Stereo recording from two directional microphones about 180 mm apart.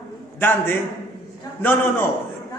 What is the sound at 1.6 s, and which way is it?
Speech, 10° left (ahead or behind).